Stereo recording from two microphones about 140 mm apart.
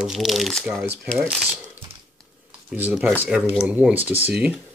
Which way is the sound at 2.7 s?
5° right (ahead or behind).